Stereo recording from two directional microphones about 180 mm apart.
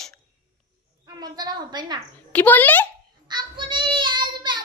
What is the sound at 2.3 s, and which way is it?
Speech, 10° left (ahead or behind).